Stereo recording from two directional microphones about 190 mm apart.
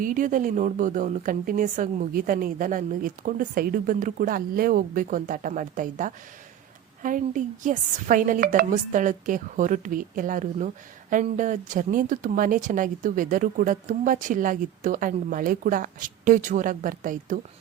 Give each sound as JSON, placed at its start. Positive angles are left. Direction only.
{"t": 0.0, "sound": "speech", "side_deg": -45}